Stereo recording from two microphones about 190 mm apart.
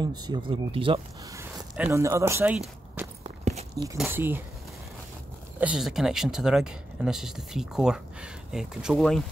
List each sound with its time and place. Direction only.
0.0 s speech: 20° right (ahead or behind)
1.3 s speech: 15° right (ahead or behind)
3.3 s walk: 35° right (ahead or behind)
4.1 s speech: 10° right (ahead or behind)
5.6 s speech: 5° right (ahead or behind)